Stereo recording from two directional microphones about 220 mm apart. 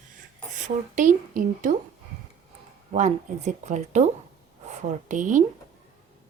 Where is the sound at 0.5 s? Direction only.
35° right (ahead or behind).